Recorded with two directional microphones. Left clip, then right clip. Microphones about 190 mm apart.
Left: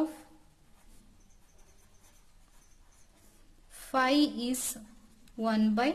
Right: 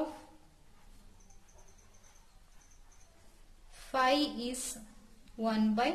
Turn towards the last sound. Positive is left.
turn(degrees=45)  # may be behind; listen again after turning